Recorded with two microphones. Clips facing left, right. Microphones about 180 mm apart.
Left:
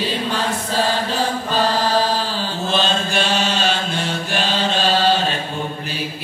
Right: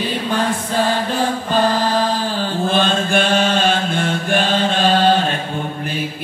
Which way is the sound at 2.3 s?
55° right (ahead or behind).